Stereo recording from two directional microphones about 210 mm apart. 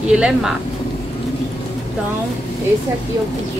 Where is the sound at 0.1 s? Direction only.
5° right (ahead or behind).